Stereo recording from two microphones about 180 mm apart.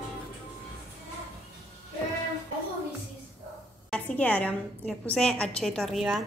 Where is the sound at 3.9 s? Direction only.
10° left (ahead or behind).